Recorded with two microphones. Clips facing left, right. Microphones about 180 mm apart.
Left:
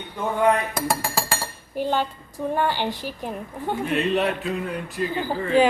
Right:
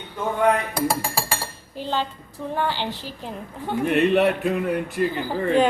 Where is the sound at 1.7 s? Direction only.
15° left (ahead or behind).